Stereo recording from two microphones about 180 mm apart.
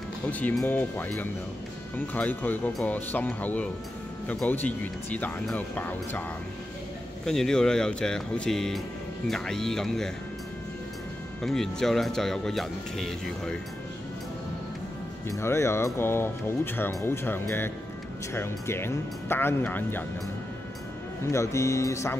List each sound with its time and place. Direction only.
0.3 s speech: 10° left (ahead or behind)
7.2 s speech: 5° left (ahead or behind)
11.4 s speech: centre (ahead or behind)
15.2 s speech: 15° left (ahead or behind)
21.3 s speech: 15° left (ahead or behind)